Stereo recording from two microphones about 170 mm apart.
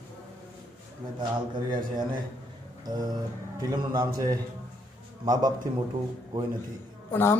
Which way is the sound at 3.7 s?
20° right (ahead or behind).